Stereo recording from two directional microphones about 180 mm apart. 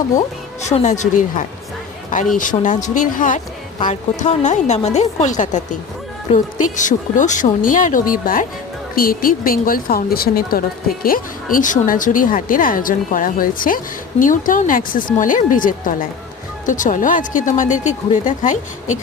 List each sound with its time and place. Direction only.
0.6 s a woman's voice: 40° left (ahead or behind)